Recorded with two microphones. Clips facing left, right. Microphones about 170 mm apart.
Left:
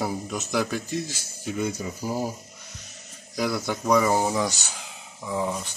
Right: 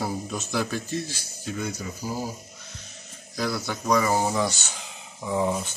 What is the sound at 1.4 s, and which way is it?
Speech, 25° left (ahead or behind).